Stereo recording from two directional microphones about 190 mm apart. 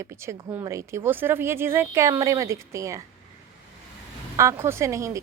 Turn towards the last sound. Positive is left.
turn(degrees=-15)  # may be behind; listen again after turning